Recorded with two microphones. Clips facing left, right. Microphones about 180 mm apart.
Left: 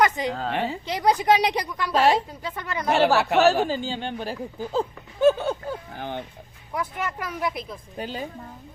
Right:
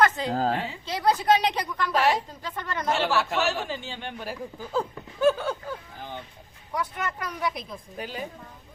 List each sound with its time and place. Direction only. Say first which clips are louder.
0.3 s a woman's voice: right 3 dB; 40° right (ahead or behind)
0.9 s speech: left 1 dB; 15° left (ahead or behind)
1.9 s a woman's voice: left 4 dB; 30° left (ahead or behind)
2.4 s speech: left 2 dB; 10° left (ahead or behind)
3.2 s a woman's voice: left 5 dB; 65° left (ahead or behind)
3.4 s speech: left 9 dB; 35° left (ahead or behind)
6.0 s speech: left 6 dB; 70° left (ahead or behind)
6.7 s speech: left 1 dB; 5° left (ahead or behind)
7.9 s a woman's voice: left 4 dB; 30° left (ahead or behind)